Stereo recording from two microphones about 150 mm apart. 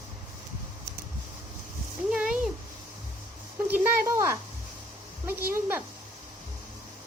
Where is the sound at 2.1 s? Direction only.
5° right (ahead or behind).